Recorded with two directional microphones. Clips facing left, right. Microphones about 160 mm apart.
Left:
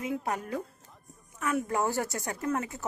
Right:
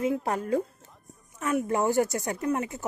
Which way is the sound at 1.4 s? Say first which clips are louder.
Right 3 dB; 25° right (ahead or behind).